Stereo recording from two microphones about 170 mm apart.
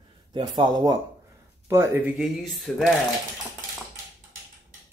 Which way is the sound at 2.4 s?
Centre (ahead or behind).